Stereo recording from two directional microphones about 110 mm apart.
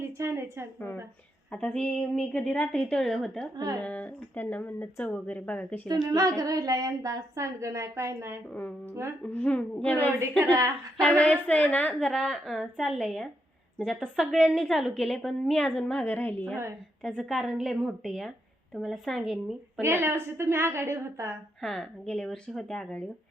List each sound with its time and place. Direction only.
0.2 s a woman's voice: 25° right (ahead or behind)
1.5 s a woman's voice: 5° left (ahead or behind)
5.9 s a woman's voice: 30° right (ahead or behind)
9.2 s speech: 15° left (ahead or behind)
10.5 s a woman's voice: 35° right (ahead or behind)
11.4 s a woman's voice: 15° left (ahead or behind)
17.2 s a woman's voice: centre (ahead or behind)
19.8 s a woman's voice: 25° right (ahead or behind)
21.6 s a woman's voice: 5° left (ahead or behind)